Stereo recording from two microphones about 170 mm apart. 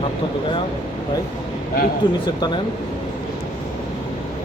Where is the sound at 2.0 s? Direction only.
25° left (ahead or behind).